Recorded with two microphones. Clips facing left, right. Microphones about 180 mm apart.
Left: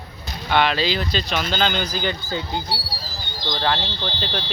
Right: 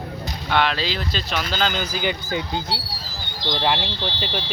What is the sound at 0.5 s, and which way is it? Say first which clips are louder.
Speech: left 2 dB; centre (ahead or behind).